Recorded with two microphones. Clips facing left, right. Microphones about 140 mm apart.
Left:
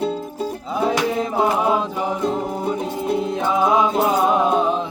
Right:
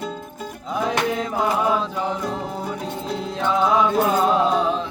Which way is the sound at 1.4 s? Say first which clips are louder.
Left 2 dB; 20° left (ahead or behind).